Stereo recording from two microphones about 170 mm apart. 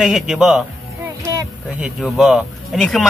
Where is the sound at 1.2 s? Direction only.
20° right (ahead or behind).